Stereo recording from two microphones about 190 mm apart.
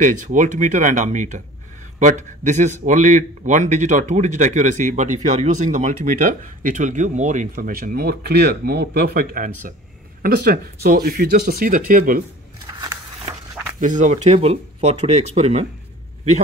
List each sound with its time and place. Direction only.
0.0 s a man's voice: 45° right (ahead or behind)
12.6 s a sound: 20° right (ahead or behind)
13.7 s a man's voice: 40° right (ahead or behind)